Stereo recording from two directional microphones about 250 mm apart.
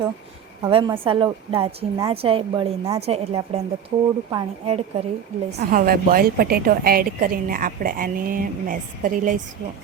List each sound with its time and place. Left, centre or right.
0.6 s a woman's voice: centre